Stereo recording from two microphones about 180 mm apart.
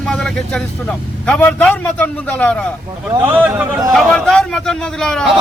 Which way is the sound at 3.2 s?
10° right (ahead or behind).